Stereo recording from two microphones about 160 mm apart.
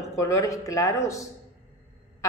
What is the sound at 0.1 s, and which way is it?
A woman's voice, 20° left (ahead or behind).